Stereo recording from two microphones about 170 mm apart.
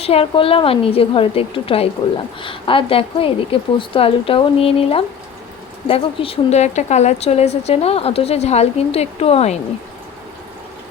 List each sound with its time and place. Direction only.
0.0 s a woman's voice: 35° left (ahead or behind)